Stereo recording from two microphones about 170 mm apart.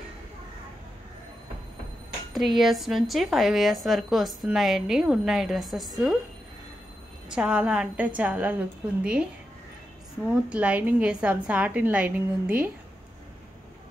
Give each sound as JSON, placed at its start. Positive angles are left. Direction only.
{"t": 2.3, "sound": "a woman's voice", "side_deg": 0}
{"t": 7.2, "sound": "a woman's voice", "side_deg": -5}